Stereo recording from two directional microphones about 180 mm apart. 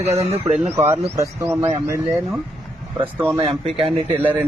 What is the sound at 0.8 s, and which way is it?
Speech, 15° right (ahead or behind).